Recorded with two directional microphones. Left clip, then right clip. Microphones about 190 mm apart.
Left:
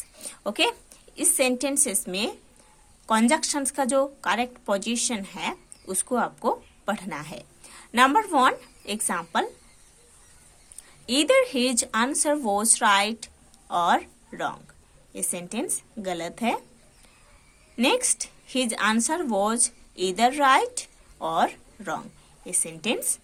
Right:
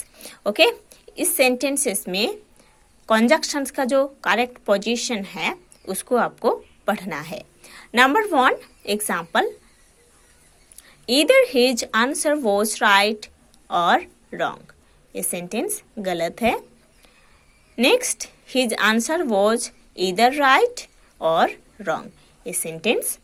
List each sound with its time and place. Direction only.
0.2 s a woman's voice: 20° right (ahead or behind)
10.8 s a woman's voice: 20° right (ahead or behind)
17.7 s speech: 20° right (ahead or behind)